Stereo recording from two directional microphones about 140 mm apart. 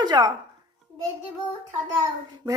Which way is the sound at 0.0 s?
30° right (ahead or behind).